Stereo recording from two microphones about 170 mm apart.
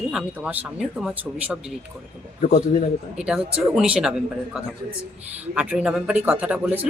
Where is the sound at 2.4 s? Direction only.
45° left (ahead or behind).